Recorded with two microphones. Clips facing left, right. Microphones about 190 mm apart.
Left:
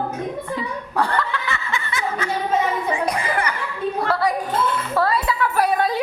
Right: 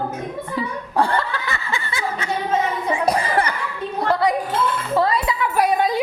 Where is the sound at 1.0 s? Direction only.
30° right (ahead or behind).